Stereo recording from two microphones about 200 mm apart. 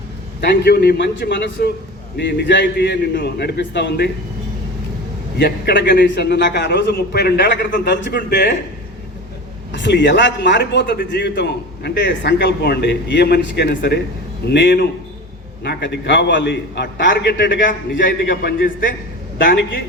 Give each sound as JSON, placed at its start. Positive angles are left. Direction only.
{"t": 0.4, "sound": "a man's voice", "side_deg": 55}
{"t": 5.4, "sound": "a man's voice", "side_deg": 55}
{"t": 9.7, "sound": "a man's voice", "side_deg": 60}
{"t": 18.4, "sound": "a man's voice", "side_deg": 45}